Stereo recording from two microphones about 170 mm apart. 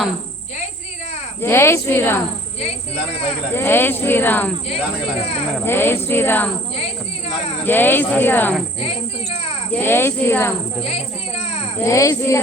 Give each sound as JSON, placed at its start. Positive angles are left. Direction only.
{"t": 1.4, "sound": "speech", "side_deg": 15}
{"t": 3.5, "sound": "speech", "side_deg": 15}
{"t": 5.6, "sound": "speech", "side_deg": 15}
{"t": 7.6, "sound": "speech", "side_deg": 10}
{"t": 8.8, "sound": "speech", "side_deg": 35}
{"t": 9.7, "sound": "speech", "side_deg": 15}
{"t": 11.8, "sound": "speech", "side_deg": 20}